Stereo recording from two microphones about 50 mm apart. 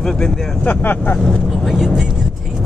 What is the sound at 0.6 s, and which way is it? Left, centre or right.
Speech, left.